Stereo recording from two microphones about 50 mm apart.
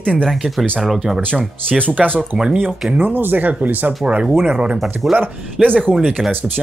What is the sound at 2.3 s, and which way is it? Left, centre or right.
Speech, centre.